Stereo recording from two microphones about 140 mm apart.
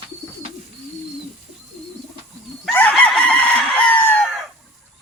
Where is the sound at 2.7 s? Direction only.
10° left (ahead or behind).